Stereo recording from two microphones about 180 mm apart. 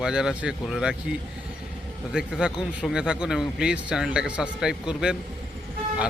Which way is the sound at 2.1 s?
5° right (ahead or behind).